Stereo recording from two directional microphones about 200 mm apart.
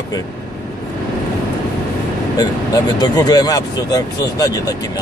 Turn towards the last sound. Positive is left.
turn(degrees=20)  # may be behind; listen again after turning